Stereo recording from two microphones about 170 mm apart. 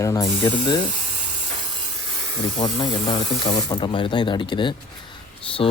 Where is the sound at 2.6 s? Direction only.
30° left (ahead or behind).